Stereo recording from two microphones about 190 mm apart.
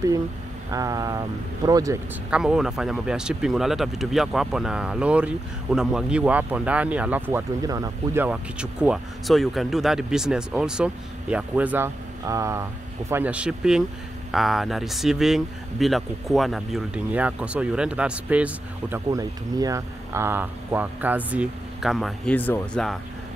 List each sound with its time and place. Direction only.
0.7 s speech: 20° right (ahead or behind)
2.3 s speech: 5° right (ahead or behind)
19.0 s speech: 20° right (ahead or behind); by 22.9 s 5° left (ahead or behind)